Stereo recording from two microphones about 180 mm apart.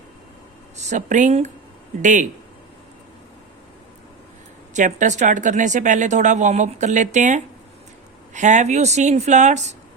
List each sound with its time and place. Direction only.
0.9 s speech: 45° right (ahead or behind)
4.7 s a woman's voice: 40° right (ahead or behind)